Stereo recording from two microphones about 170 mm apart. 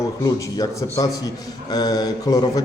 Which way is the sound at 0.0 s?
20° left (ahead or behind).